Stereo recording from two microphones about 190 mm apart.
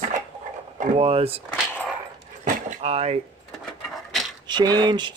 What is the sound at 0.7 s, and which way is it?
Speech, 30° right (ahead or behind).